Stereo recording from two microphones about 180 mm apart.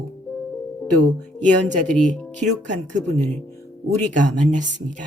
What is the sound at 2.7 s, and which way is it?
Speech, 45° right (ahead or behind).